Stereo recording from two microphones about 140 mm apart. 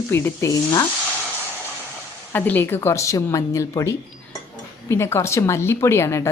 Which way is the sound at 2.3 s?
15° left (ahead or behind).